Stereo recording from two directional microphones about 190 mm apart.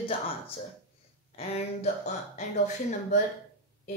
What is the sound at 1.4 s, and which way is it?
Speech, 35° left (ahead or behind).